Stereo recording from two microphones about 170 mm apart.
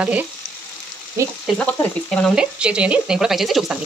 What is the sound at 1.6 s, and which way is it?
Speech, 10° left (ahead or behind).